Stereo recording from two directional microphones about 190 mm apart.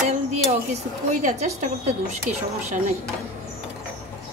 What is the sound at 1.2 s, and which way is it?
Speech, 40° right (ahead or behind).